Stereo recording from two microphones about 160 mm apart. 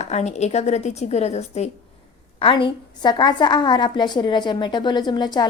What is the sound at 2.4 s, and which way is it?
A woman's voice, 35° left (ahead or behind).